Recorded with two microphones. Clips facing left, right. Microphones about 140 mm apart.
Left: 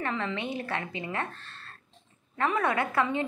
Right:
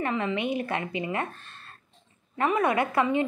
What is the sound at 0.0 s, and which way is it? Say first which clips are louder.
A woman's voice: right 4 dB; 15° right (ahead or behind).